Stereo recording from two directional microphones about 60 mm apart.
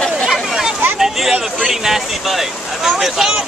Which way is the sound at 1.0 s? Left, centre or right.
Centre.